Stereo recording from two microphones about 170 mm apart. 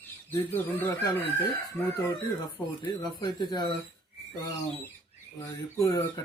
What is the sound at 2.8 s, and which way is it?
Speech, 25° left (ahead or behind).